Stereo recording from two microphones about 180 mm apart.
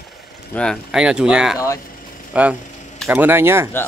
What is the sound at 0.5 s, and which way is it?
Speech, 5° left (ahead or behind).